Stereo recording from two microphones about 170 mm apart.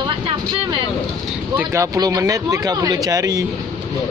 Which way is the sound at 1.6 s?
15° right (ahead or behind).